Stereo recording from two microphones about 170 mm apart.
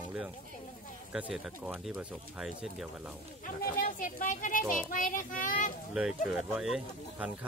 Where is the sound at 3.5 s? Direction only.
60° left (ahead or behind).